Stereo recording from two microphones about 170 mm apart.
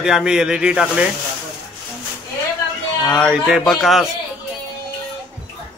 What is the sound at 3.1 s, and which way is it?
Speech, centre (ahead or behind).